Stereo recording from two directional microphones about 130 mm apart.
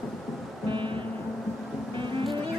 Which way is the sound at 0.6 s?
40° right (ahead or behind).